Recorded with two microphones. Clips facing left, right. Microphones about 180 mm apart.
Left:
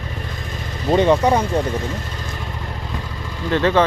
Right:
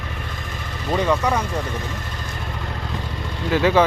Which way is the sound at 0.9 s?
30° left (ahead or behind).